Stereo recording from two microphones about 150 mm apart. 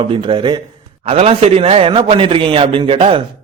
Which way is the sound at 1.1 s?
45° right (ahead or behind).